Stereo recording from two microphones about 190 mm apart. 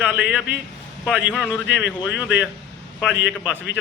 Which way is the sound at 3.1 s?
70° left (ahead or behind).